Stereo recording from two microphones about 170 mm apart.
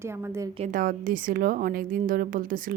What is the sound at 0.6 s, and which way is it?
A woman's voice, 55° right (ahead or behind).